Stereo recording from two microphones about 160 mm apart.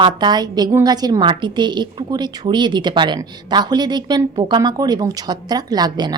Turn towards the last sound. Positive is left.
turn(degrees=-25)  # may be behind; listen again after turning